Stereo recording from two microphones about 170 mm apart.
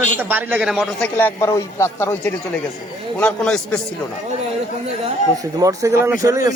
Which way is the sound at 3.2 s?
5° left (ahead or behind).